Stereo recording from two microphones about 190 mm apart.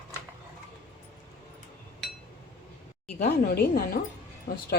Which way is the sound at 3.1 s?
55° left (ahead or behind).